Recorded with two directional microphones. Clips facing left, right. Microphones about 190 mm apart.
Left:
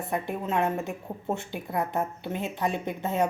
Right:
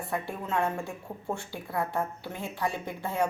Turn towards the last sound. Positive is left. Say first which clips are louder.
# left 3 dB
turn(degrees=20)  # may be behind; listen again after turning